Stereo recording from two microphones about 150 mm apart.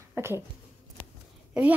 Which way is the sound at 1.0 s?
40° left (ahead or behind).